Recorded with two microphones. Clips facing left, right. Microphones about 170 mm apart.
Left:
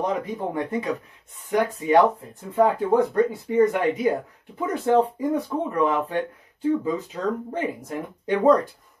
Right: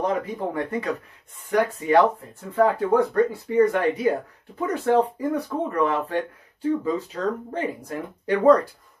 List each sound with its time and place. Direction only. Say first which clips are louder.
0.0 s speech: right 1 dB; 20° left (ahead or behind)